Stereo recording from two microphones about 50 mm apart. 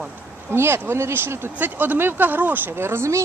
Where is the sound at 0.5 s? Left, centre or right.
Right.